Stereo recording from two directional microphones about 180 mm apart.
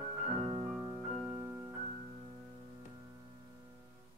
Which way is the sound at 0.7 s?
5° left (ahead or behind).